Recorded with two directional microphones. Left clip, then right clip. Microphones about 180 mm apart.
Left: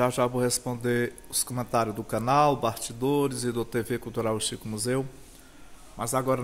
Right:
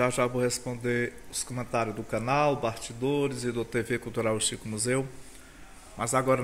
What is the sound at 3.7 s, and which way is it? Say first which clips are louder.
Speech: even; 15° left (ahead or behind).